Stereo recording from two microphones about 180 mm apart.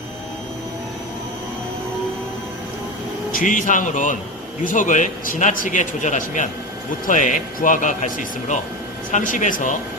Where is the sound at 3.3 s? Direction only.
50° left (ahead or behind).